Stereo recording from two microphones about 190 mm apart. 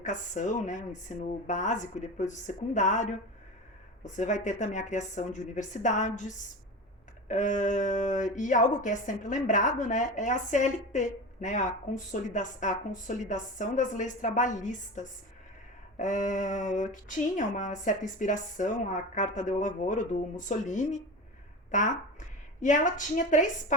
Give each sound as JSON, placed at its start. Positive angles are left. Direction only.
{"t": 0.0, "sound": "a woman's voice", "side_deg": 40}